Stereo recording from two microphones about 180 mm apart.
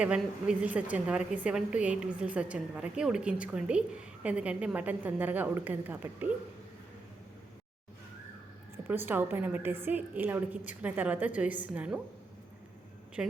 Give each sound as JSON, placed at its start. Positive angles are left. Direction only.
{"t": 0.0, "sound": "a woman's voice", "side_deg": -5}
{"t": 8.9, "sound": "a woman's voice", "side_deg": -10}
{"t": 13.2, "sound": "a woman's voice", "side_deg": -5}